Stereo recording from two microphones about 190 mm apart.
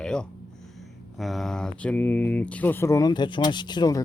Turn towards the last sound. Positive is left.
turn(degrees=20)  # may be behind; listen again after turning